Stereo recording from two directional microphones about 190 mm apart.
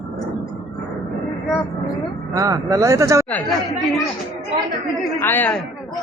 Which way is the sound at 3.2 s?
5° left (ahead or behind).